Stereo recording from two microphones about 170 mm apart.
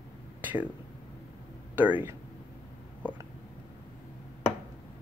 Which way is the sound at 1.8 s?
10° right (ahead or behind).